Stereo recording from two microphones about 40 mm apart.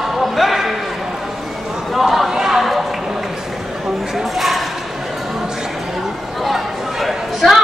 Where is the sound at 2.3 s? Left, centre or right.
Centre.